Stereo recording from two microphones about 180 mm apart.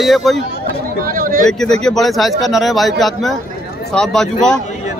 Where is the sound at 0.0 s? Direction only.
Centre (ahead or behind).